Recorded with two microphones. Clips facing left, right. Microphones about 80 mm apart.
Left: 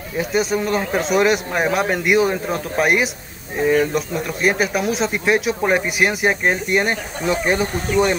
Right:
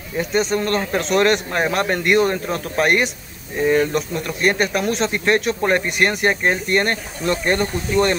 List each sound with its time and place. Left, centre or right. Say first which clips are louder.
0.2 s a man's voice: even; centre